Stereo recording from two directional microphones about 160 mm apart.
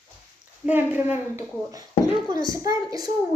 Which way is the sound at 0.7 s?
10° right (ahead or behind).